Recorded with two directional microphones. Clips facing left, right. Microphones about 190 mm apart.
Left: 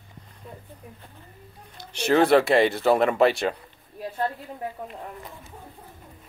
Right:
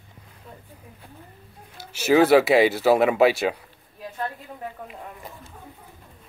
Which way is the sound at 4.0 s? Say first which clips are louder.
Left 3 dB; 30° left (ahead or behind).